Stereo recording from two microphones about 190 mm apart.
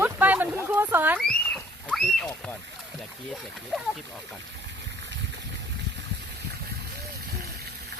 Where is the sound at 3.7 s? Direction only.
Centre (ahead or behind).